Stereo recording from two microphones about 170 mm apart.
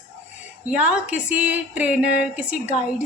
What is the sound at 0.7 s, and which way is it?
A woman's voice, 5° right (ahead or behind).